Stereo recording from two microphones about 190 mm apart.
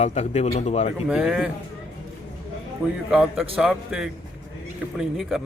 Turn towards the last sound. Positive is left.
turn(degrees=0)  # may be behind; listen again after turning